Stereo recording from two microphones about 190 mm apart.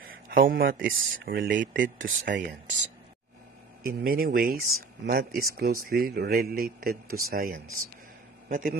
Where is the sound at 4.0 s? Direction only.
50° right (ahead or behind).